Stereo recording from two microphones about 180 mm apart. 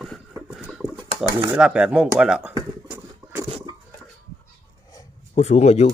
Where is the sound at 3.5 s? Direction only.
30° right (ahead or behind).